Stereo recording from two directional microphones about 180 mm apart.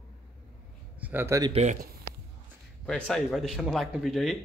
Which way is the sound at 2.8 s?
5° left (ahead or behind).